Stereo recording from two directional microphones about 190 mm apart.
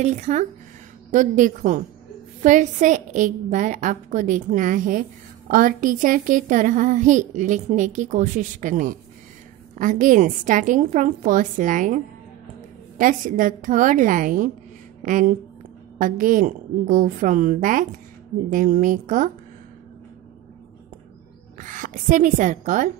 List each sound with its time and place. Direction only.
0.0 s a woman's voice: 35° right (ahead or behind)
13.0 s a woman's voice: 45° right (ahead or behind)
21.5 s speech: 45° right (ahead or behind)